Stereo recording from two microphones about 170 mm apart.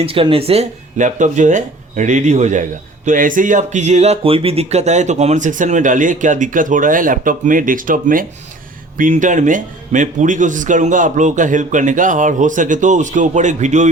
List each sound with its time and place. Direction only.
0.0 s speech: 35° right (ahead or behind)